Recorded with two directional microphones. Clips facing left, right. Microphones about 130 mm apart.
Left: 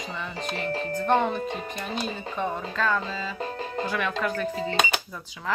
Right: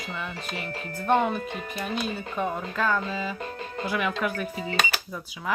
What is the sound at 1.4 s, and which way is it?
Speech, 30° left (ahead or behind).